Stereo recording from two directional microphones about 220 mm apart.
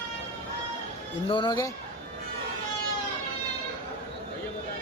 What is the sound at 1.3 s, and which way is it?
Speech, 20° left (ahead or behind).